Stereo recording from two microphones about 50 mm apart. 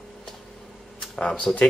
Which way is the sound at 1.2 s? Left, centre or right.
Centre.